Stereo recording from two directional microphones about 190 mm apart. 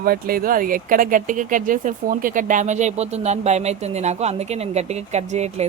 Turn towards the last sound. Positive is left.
turn(degrees=-35)  # may be behind; listen again after turning